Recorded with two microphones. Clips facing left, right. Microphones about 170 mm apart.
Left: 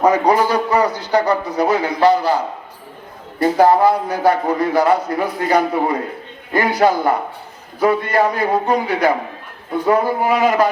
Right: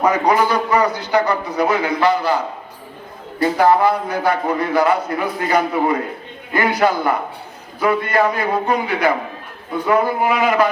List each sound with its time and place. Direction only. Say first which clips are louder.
0.0 s a man's voice: left 2 dB; 35° left (ahead or behind)
3.4 s a man's voice: left 2 dB; 35° left (ahead or behind)